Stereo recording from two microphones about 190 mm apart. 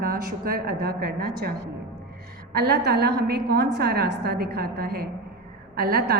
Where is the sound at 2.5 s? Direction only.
60° right (ahead or behind).